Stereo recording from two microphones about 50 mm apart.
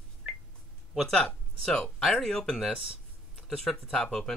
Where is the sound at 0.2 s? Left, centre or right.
Right.